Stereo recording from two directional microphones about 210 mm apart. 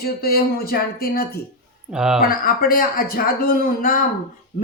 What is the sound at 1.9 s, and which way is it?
Speech, 5° right (ahead or behind).